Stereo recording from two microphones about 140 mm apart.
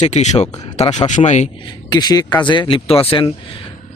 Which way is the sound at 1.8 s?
30° left (ahead or behind).